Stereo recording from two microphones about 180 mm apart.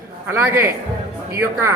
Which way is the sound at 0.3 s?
10° right (ahead or behind).